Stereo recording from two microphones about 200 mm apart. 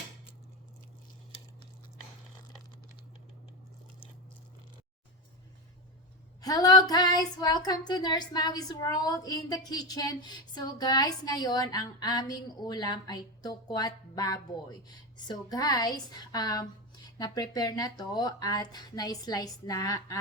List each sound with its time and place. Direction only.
6.4 s a woman's voice: 20° left (ahead or behind)